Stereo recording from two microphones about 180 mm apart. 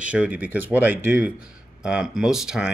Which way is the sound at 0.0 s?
10° right (ahead or behind).